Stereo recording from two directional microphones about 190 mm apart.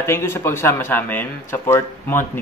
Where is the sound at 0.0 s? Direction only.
15° left (ahead or behind).